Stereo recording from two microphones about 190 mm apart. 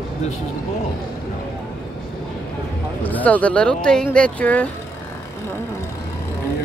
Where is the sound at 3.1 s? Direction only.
10° left (ahead or behind).